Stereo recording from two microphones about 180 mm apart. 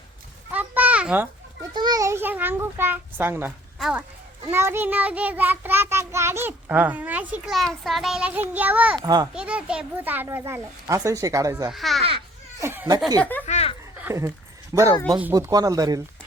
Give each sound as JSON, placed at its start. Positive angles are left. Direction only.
{"t": 0.5, "sound": "a sound", "side_deg": -10}
{"t": 1.7, "sound": "child singing", "side_deg": -25}
{"t": 3.8, "sound": "a child's voice", "side_deg": -5}
{"t": 4.5, "sound": "child singing", "side_deg": -15}
{"t": 9.0, "sound": "speech", "side_deg": -20}
{"t": 9.3, "sound": "child singing", "side_deg": -5}
{"t": 11.7, "sound": "speech", "side_deg": 0}
{"t": 12.5, "sound": "speech", "side_deg": -15}
{"t": 13.4, "sound": "a sound", "side_deg": 35}
{"t": 14.0, "sound": "speech", "side_deg": -15}